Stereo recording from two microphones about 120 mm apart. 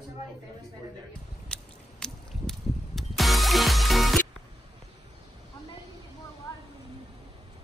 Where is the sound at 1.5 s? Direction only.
5° left (ahead or behind).